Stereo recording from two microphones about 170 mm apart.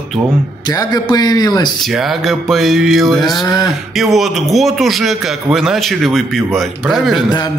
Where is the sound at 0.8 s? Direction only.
25° left (ahead or behind).